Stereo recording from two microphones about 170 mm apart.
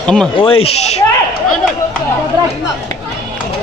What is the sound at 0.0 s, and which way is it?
Speech, 5° left (ahead or behind).